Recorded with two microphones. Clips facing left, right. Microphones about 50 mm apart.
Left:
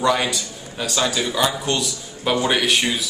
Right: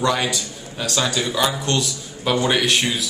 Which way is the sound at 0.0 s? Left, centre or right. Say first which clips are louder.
Left 1 dB; centre.